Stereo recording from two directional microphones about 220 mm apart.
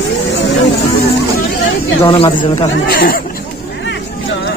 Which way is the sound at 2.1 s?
25° left (ahead or behind).